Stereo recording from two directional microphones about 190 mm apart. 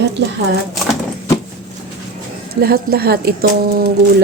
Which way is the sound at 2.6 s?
55° right (ahead or behind).